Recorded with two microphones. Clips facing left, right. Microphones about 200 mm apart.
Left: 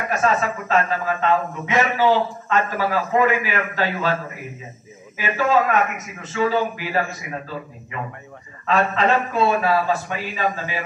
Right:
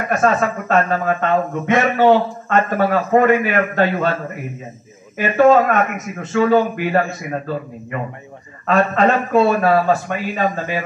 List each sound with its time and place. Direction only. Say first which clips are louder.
0.1 s speech: right 4 dB; 50° right (ahead or behind)
5.1 s speech: right 7 dB; 50° right (ahead or behind)
8.6 s speech: right 4 dB; 50° right (ahead or behind)